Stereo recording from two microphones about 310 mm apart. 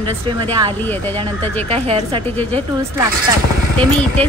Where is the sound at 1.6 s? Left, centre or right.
Centre.